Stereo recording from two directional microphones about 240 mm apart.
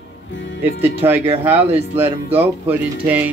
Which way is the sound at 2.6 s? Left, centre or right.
Centre.